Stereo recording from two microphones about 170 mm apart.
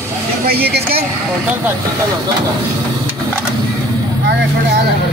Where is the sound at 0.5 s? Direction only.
65° right (ahead or behind).